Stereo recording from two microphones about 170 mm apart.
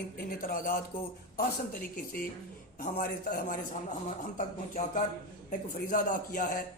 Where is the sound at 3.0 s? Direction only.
55° left (ahead or behind).